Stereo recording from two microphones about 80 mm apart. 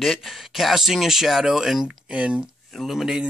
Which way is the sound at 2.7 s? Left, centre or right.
Centre.